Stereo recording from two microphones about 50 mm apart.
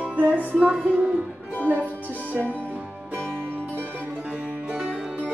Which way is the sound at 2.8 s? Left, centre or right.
Right.